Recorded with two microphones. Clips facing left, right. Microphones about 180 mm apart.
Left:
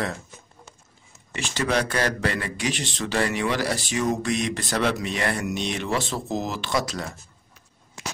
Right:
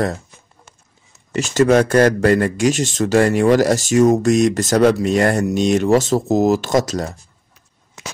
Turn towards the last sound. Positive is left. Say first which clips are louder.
# right 9 dB
turn(degrees=-40)  # may be behind; listen again after turning